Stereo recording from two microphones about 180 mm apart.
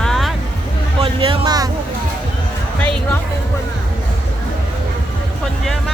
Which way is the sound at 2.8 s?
5° left (ahead or behind).